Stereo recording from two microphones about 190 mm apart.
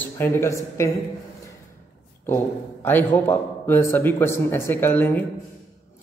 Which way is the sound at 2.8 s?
10° left (ahead or behind).